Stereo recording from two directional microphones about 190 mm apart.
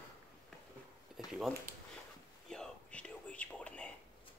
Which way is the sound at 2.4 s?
5° left (ahead or behind).